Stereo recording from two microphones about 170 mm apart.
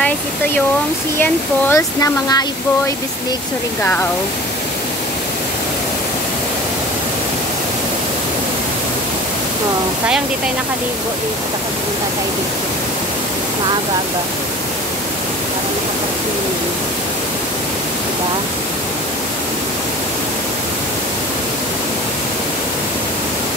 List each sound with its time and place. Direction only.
1.2 s speech: 15° left (ahead or behind)